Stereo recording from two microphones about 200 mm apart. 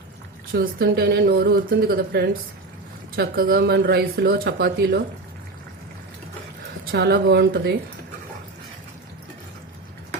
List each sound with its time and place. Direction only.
0.5 s speech: 50° right (ahead or behind)
6.9 s speech: 55° right (ahead or behind)